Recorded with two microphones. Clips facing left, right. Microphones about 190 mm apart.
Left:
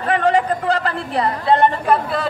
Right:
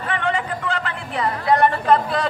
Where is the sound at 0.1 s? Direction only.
40° left (ahead or behind).